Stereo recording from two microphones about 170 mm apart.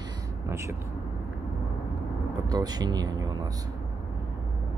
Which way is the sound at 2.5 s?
25° right (ahead or behind).